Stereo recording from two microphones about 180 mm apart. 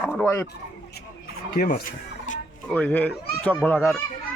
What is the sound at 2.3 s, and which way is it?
Music, 45° left (ahead or behind).